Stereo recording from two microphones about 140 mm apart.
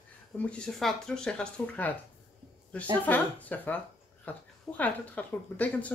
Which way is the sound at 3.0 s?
10° left (ahead or behind).